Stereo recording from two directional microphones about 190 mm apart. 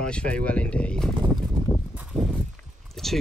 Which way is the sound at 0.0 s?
5° left (ahead or behind).